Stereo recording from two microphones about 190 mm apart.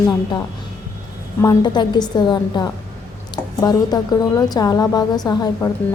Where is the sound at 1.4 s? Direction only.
20° left (ahead or behind).